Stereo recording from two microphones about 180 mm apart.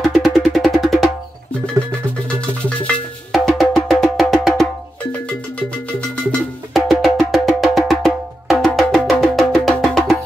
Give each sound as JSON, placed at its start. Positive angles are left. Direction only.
{"t": 0.0, "sound": "music", "side_deg": 0}
{"t": 1.8, "sound": "music", "side_deg": -15}
{"t": 3.3, "sound": "percussion", "side_deg": 0}
{"t": 6.7, "sound": "percussion", "side_deg": 0}